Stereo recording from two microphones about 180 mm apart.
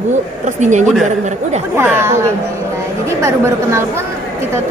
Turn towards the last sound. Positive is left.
turn(degrees=-15)  # may be behind; listen again after turning